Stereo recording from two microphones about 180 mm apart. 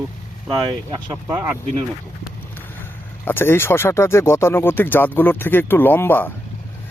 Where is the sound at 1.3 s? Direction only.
10° right (ahead or behind).